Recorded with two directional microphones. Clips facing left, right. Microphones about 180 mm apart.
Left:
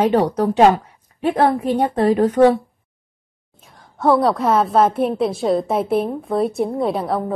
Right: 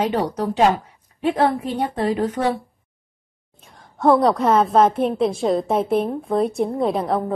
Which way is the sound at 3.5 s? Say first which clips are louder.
Even; centre (ahead or behind).